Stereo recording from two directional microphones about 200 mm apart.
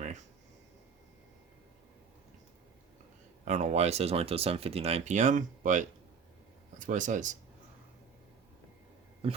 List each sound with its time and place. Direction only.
3.4 s speech: 35° right (ahead or behind)